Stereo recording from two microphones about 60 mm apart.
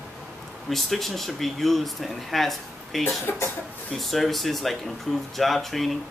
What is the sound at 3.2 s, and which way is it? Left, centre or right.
Speech, left.